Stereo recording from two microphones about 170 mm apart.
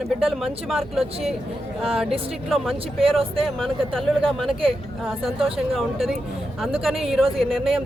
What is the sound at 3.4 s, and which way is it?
Speech, 5° left (ahead or behind).